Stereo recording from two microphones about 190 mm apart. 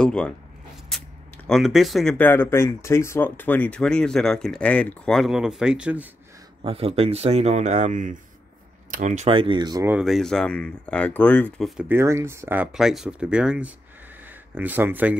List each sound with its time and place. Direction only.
0.0 s speech: 5° left (ahead or behind)
6.6 s speech: 30° right (ahead or behind)
9.9 s speech: centre (ahead or behind)
11.9 s speech: 15° right (ahead or behind)